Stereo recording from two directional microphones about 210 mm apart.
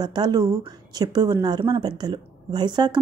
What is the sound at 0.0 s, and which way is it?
A woman's voice, 20° right (ahead or behind).